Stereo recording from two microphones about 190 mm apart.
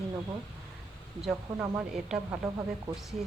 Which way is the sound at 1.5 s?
10° right (ahead or behind).